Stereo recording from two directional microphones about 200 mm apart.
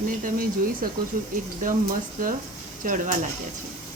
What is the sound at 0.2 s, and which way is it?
Speech, 45° right (ahead or behind).